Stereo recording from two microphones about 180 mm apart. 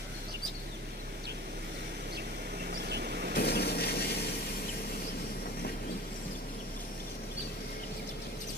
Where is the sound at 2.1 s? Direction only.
65° right (ahead or behind).